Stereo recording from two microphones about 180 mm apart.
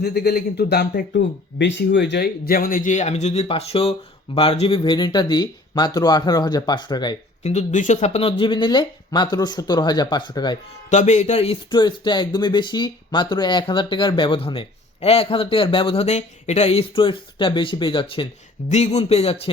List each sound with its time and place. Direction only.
0.0 s speech: 60° left (ahead or behind); by 7.2 s 25° left (ahead or behind)
7.4 s speech: 40° left (ahead or behind); by 10.6 s 25° left (ahead or behind)
10.8 s speech: 40° left (ahead or behind)